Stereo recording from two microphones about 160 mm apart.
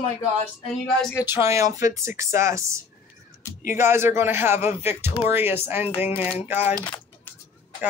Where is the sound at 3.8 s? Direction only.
15° right (ahead or behind).